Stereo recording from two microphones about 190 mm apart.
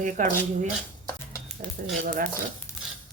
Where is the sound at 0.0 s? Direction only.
45° right (ahead or behind).